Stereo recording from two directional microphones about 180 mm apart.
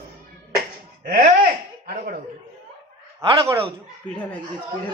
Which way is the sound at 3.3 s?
15° right (ahead or behind).